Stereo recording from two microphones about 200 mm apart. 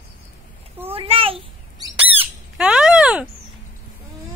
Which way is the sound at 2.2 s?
5° right (ahead or behind).